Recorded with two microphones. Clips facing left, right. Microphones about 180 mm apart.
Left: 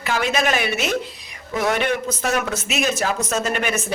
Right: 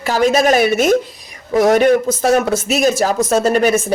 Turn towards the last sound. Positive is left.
turn(degrees=-40)  # may be behind; listen again after turning